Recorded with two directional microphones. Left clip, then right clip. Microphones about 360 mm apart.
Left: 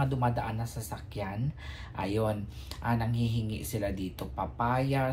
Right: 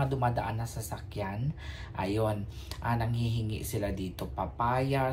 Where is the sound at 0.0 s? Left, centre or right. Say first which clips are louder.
Even; centre.